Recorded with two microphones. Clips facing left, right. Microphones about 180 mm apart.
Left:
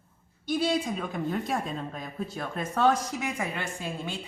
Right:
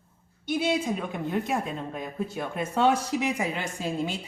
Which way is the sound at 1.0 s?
5° right (ahead or behind).